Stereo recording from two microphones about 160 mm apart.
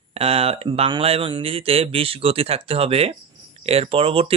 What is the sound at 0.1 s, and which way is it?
Speech, 40° right (ahead or behind).